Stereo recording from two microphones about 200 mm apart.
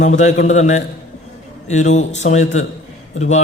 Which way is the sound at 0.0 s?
35° left (ahead or behind).